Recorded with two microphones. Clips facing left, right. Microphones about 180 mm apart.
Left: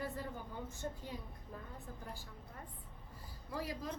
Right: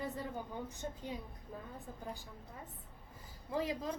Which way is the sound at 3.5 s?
20° right (ahead or behind).